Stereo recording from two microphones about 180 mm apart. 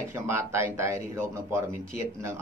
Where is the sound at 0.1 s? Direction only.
15° right (ahead or behind).